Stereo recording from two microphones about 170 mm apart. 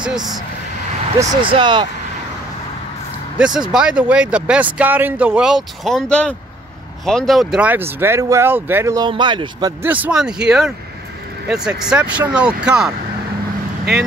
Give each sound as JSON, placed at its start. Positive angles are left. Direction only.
{"t": 1.3, "sound": "speech", "side_deg": -30}
{"t": 3.3, "sound": "speech", "side_deg": -5}
{"t": 9.8, "sound": "speech", "side_deg": -10}